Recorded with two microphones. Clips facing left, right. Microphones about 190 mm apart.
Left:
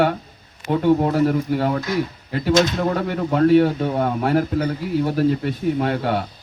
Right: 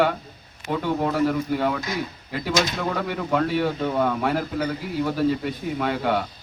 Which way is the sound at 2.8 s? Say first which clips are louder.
Left 5 dB; 45° left (ahead or behind).